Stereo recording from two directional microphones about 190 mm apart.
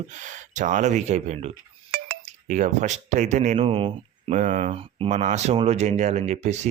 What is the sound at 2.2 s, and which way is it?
Speech, 40° right (ahead or behind).